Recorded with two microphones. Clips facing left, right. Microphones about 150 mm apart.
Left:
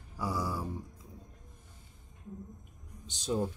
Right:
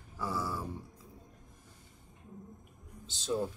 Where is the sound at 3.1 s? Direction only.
15° left (ahead or behind).